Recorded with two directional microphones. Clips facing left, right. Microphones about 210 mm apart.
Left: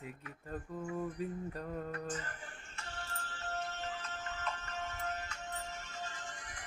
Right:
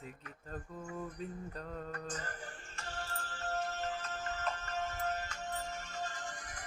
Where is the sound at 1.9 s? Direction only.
40° right (ahead or behind).